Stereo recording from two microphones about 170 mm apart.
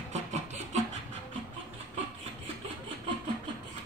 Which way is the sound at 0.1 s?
40° right (ahead or behind).